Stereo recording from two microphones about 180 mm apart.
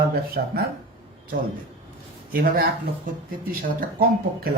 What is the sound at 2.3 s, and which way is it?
Speech, 55° right (ahead or behind).